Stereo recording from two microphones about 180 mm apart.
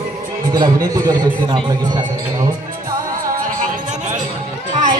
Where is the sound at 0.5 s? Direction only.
25° right (ahead or behind).